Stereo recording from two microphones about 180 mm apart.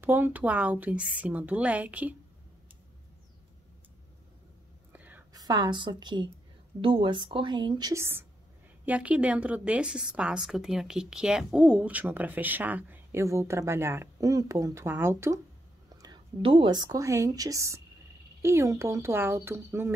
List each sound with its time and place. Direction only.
0.0 s a woman's voice: 10° right (ahead or behind)
4.9 s whispering: 10° right (ahead or behind)
5.3 s a woman's voice: 20° right (ahead or behind)
16.0 s a woman's voice: 25° right (ahead or behind)